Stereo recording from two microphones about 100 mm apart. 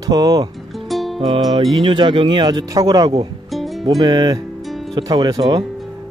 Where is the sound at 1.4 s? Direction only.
55° right (ahead or behind).